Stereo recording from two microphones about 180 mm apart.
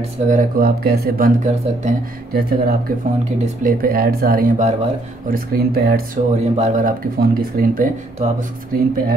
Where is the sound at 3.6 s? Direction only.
55° right (ahead or behind).